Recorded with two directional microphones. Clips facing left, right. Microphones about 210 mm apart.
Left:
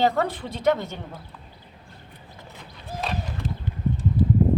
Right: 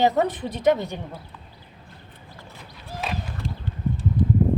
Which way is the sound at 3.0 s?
Centre (ahead or behind).